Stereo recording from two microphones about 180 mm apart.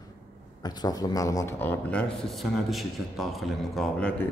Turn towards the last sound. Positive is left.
turn(degrees=5)  # may be behind; listen again after turning